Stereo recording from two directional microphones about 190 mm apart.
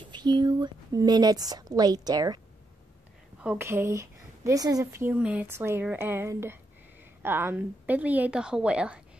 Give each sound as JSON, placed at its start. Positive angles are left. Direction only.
{"t": 0.1, "sound": "a woman's voice", "side_deg": -25}
{"t": 3.4, "sound": "speech", "side_deg": -15}